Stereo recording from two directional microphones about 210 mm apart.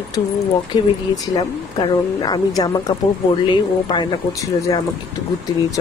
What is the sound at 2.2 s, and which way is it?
Speech, 20° left (ahead or behind).